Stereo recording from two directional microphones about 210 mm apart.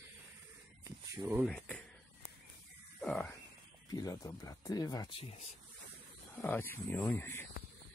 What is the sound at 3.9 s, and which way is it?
Speech, 20° left (ahead or behind).